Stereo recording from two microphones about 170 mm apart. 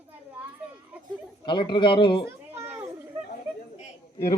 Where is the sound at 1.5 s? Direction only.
25° left (ahead or behind).